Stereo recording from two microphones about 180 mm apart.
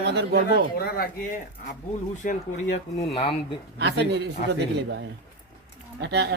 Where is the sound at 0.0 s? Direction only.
70° right (ahead or behind).